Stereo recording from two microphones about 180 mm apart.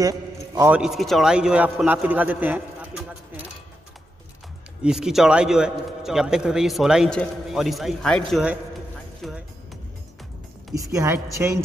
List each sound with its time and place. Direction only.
0.0 s a man's voice: 20° right (ahead or behind)
0.7 s a man's voice: 5° right (ahead or behind)
4.8 s a man's voice: 5° right (ahead or behind)
10.7 s a woman's voice: 20° right (ahead or behind)